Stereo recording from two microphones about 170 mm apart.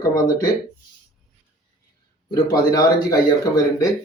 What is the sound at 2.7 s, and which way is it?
Speech, 20° left (ahead or behind).